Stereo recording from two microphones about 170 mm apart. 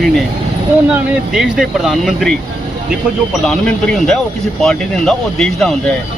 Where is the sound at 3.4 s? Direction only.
5° left (ahead or behind).